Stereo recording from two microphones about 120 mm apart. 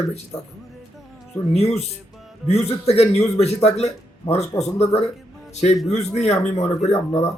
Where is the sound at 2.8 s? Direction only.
60° left (ahead or behind).